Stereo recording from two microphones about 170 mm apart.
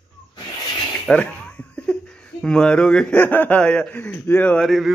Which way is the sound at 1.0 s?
5° left (ahead or behind).